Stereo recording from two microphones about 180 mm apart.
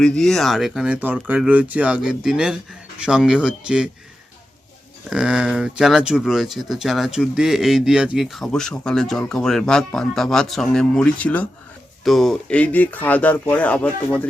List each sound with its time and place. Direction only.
0.0 s speech: centre (ahead or behind)
5.0 s speech: 5° right (ahead or behind)